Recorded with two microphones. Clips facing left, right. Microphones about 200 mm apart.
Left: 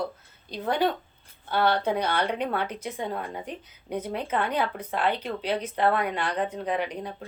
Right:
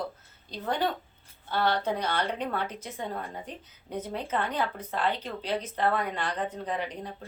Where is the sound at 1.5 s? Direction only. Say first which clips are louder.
Left 3 dB; 60° left (ahead or behind).